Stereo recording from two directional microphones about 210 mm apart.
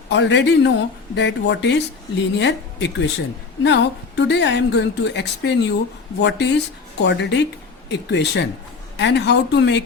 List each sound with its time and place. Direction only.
0.1 s speech: 60° left (ahead or behind)